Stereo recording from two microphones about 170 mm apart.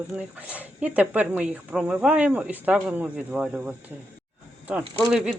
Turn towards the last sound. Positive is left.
turn(degrees=-5)  # may be behind; listen again after turning